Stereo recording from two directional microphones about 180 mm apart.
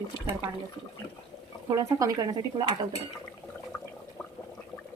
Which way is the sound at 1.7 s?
20° right (ahead or behind).